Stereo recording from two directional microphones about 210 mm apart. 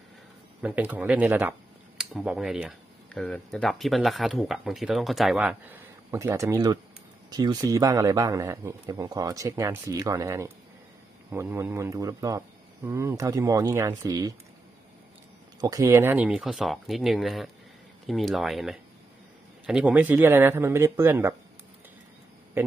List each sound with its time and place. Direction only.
0.6 s speech: 5° right (ahead or behind)
15.6 s speech: 15° right (ahead or behind)